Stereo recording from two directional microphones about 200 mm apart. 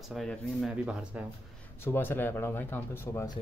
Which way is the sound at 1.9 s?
10° left (ahead or behind).